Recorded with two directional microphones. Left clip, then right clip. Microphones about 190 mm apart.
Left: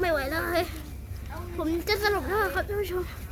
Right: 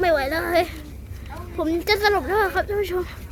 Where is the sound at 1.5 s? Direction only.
10° right (ahead or behind).